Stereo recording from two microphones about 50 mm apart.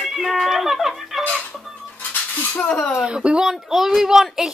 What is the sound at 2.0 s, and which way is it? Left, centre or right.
Dishes, left.